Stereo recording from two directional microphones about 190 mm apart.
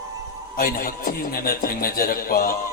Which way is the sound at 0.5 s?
50° left (ahead or behind).